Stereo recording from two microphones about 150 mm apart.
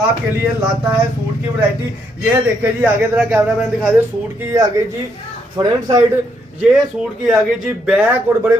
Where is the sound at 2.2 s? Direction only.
15° right (ahead or behind).